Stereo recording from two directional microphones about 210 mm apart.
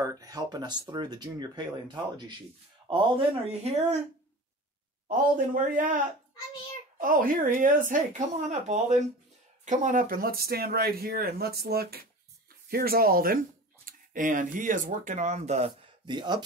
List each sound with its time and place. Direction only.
0.0 s speech: 15° right (ahead or behind)
3.6 s speech: 30° right (ahead or behind)
5.0 s speech: 40° right (ahead or behind)
7.0 s speech: 40° right (ahead or behind); by 16.4 s 20° right (ahead or behind)